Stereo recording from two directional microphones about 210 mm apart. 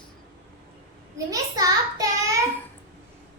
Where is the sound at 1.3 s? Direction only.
15° right (ahead or behind).